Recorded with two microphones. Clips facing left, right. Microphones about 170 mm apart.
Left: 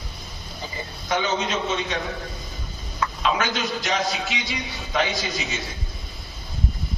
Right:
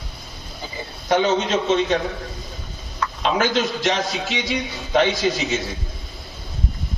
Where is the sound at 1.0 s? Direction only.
35° right (ahead or behind).